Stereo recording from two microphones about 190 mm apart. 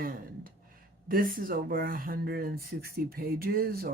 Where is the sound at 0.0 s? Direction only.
50° right (ahead or behind).